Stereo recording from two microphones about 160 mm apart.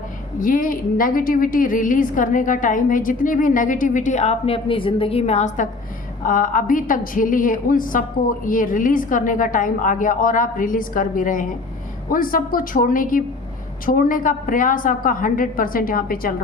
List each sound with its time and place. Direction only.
0.3 s a woman's voice: 60° left (ahead or behind); by 5.6 s 45° left (ahead or behind)
6.2 s a woman's voice: 55° left (ahead or behind)